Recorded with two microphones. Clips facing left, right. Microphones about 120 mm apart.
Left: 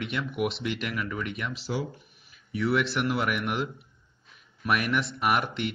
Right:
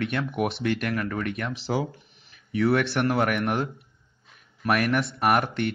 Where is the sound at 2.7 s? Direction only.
60° right (ahead or behind).